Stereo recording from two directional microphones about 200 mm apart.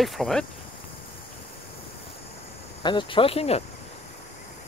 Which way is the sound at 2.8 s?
25° left (ahead or behind).